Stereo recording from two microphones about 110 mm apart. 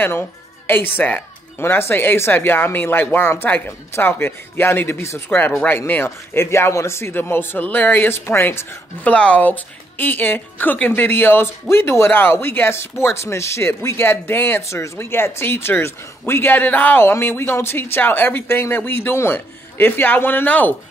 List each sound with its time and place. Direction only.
0.7 s a man's voice: 20° left (ahead or behind)